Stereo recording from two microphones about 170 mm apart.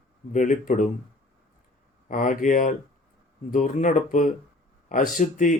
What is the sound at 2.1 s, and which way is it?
Speech, 50° left (ahead or behind).